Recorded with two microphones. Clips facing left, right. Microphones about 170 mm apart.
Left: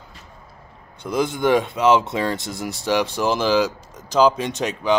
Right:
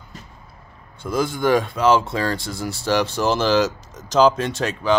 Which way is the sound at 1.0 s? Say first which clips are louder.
Even; 15° left (ahead or behind).